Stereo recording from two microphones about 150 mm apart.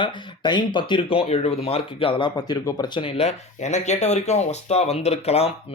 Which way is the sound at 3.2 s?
50° left (ahead or behind).